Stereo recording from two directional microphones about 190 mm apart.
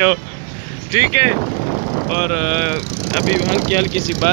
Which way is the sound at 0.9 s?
20° left (ahead or behind).